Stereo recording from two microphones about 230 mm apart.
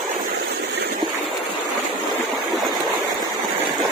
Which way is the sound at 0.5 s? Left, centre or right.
Right.